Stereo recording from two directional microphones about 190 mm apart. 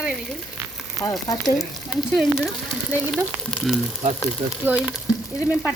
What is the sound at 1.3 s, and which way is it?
Speech, 20° left (ahead or behind).